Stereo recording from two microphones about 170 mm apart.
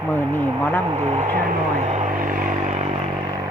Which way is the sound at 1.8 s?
40° right (ahead or behind).